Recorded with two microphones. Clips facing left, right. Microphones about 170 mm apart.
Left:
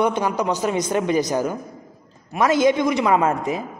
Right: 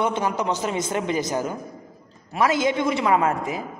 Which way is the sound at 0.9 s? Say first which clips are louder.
Left 6 dB; 20° right (ahead or behind).